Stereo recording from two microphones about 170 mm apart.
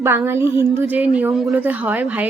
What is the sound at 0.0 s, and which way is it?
A woman's voice, 15° right (ahead or behind).